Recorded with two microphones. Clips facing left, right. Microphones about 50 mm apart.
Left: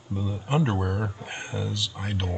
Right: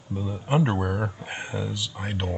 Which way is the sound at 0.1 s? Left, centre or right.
Centre.